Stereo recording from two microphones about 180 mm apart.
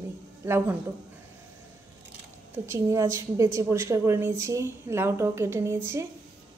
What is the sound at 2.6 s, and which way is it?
A woman's voice, 15° right (ahead or behind).